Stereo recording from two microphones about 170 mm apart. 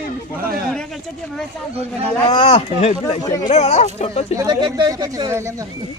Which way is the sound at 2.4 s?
40° left (ahead or behind).